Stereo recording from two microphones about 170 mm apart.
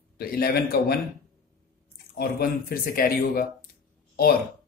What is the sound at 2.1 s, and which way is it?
Speech, 60° left (ahead or behind).